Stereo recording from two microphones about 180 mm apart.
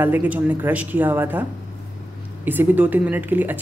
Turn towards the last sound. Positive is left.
turn(degrees=-10)  # may be behind; listen again after turning